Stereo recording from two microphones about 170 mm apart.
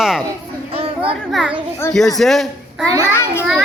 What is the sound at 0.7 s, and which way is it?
Chatter, 35° right (ahead or behind).